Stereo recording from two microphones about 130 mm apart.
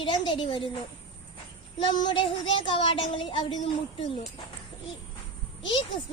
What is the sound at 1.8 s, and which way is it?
A child's voice, 35° left (ahead or behind).